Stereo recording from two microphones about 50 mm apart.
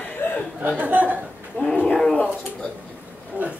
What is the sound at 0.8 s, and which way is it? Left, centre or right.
Chuckle, right.